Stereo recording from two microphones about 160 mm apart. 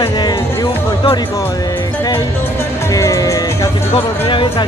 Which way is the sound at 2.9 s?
20° left (ahead or behind).